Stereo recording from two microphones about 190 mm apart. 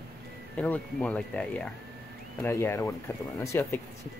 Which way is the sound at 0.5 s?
5° left (ahead or behind).